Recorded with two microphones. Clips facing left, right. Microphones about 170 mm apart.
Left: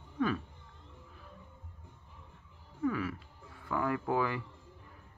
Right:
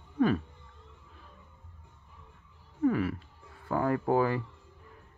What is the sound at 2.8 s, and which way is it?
Speech, 40° right (ahead or behind).